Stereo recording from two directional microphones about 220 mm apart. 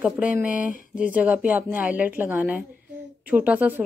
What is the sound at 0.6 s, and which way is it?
Speech, 35° right (ahead or behind).